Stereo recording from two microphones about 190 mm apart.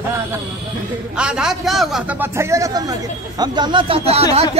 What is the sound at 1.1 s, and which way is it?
A man's voice, 5° right (ahead or behind).